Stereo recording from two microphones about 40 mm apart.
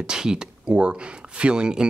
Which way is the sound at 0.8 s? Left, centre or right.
Right.